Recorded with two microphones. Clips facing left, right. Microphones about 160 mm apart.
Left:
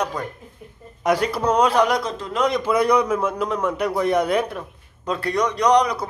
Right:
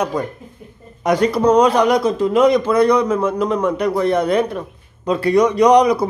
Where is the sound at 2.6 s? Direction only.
10° left (ahead or behind).